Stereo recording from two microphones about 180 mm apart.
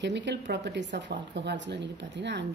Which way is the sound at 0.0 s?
75° right (ahead or behind).